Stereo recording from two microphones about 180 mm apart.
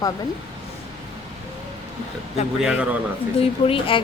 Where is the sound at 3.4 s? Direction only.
30° left (ahead or behind).